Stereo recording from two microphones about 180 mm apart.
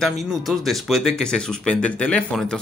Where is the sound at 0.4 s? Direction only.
Centre (ahead or behind).